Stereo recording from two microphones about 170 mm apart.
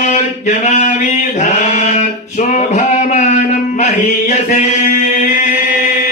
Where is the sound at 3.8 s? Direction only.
40° left (ahead or behind).